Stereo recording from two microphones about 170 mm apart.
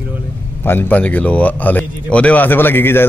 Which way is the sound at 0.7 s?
10° left (ahead or behind).